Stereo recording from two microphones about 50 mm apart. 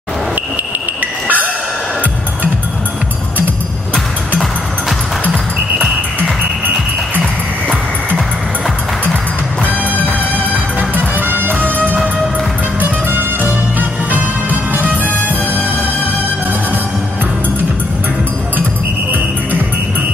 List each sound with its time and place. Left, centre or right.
1.2 s train: right
10.3 s music: right
13.1 s music: right